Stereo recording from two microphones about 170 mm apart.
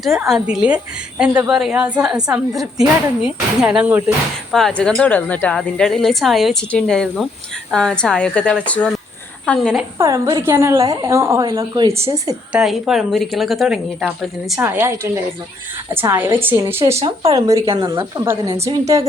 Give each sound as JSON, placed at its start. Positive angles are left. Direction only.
{"t": 0.3, "sound": "a woman's voice", "side_deg": -5}
{"t": 4.5, "sound": "a woman's voice", "side_deg": 5}
{"t": 10.0, "sound": "a woman's voice", "side_deg": -20}
{"t": 12.5, "sound": "a woman's voice", "side_deg": -5}
{"t": 14.6, "sound": "a woman's voice", "side_deg": -15}